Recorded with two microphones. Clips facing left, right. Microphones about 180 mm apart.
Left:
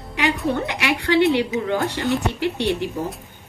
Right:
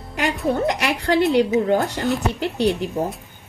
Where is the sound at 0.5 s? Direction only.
40° right (ahead or behind).